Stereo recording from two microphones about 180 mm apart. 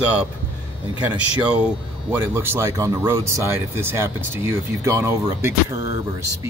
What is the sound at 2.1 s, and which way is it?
Speech, 10° right (ahead or behind).